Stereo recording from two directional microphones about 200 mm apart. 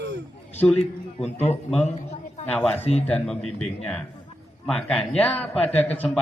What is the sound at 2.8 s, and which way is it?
Speech, 30° left (ahead or behind).